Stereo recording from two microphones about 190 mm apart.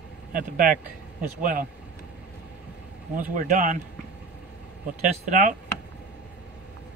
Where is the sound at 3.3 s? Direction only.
45° right (ahead or behind).